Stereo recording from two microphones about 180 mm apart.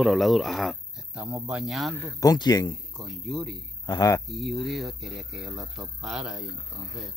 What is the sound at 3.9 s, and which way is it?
Speech, 20° left (ahead or behind).